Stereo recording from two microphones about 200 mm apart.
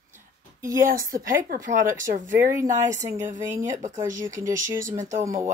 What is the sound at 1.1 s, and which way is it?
A woman's voice, 45° right (ahead or behind).